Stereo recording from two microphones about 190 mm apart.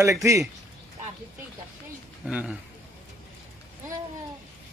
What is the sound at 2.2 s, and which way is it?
Speech, 5° right (ahead or behind).